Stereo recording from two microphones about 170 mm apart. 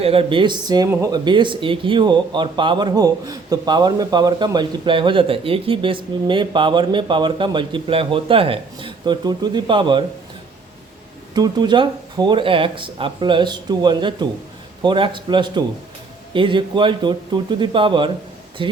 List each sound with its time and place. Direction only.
0.0 s speech: 35° right (ahead or behind)
11.3 s speech: 25° right (ahead or behind)